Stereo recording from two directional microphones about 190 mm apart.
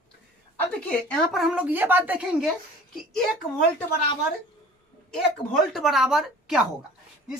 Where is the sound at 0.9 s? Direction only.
5° left (ahead or behind).